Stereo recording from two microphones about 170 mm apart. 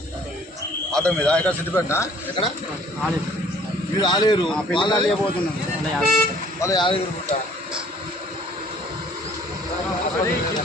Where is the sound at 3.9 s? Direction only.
25° left (ahead or behind).